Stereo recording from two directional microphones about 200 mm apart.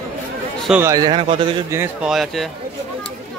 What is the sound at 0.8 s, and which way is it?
Speech, 20° right (ahead or behind).